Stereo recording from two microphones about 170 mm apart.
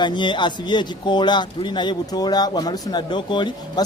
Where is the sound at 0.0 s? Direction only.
25° left (ahead or behind).